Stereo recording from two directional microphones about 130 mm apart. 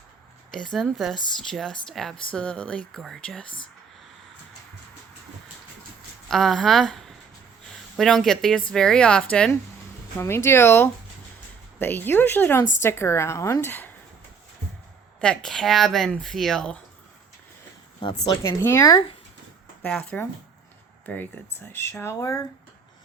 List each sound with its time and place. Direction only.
0.5 s speech: 5° left (ahead or behind)
6.2 s speech: 5° left (ahead or behind)
10.2 s a woman's voice: 20° left (ahead or behind)
15.2 s speech: 5° left (ahead or behind)
18.4 s a woman's voice: 20° left (ahead or behind)
19.8 s speech: 10° left (ahead or behind)